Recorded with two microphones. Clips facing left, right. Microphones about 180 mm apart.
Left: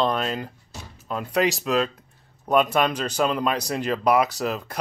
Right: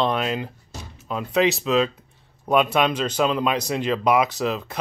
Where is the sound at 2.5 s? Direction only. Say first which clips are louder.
Right 1 dB; 10° right (ahead or behind).